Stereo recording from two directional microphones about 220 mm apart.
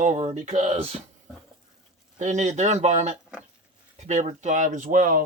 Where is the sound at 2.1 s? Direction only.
35° right (ahead or behind).